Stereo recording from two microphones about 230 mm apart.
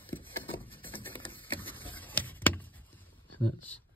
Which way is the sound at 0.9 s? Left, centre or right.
Centre.